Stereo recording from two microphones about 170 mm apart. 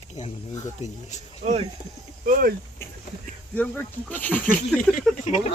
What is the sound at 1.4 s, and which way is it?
Speech, 45° right (ahead or behind).